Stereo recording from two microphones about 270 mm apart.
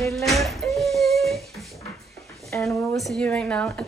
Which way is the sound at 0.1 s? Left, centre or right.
Centre.